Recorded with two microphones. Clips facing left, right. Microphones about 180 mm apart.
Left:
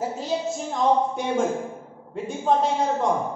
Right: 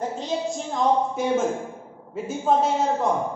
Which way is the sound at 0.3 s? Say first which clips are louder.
Right 1 dB; 5° left (ahead or behind).